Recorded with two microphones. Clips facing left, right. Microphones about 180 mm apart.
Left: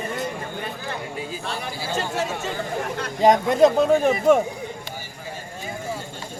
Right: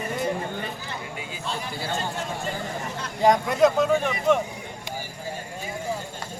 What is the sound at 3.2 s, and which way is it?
Speech, 25° left (ahead or behind).